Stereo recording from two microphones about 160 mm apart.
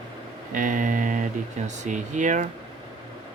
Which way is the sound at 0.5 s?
55° right (ahead or behind).